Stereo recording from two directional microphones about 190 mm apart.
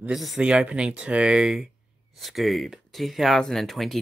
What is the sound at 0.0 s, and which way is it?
Speech, centre (ahead or behind).